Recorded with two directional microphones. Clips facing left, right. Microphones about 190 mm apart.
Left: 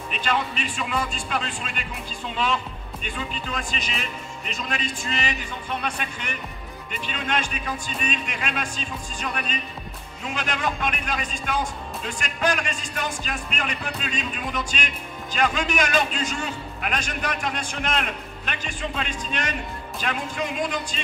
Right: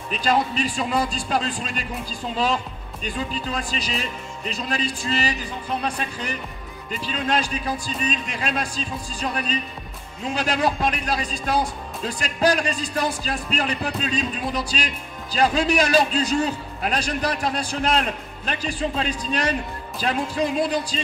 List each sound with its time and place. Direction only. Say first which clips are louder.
0.1 s speech: right 5 dB; 35° right (ahead or behind)